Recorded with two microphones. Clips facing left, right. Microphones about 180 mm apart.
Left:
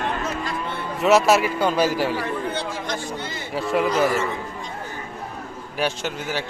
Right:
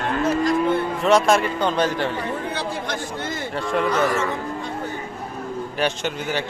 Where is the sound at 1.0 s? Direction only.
5° left (ahead or behind).